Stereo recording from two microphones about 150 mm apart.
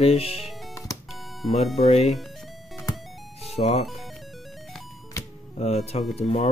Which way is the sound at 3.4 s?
45° left (ahead or behind).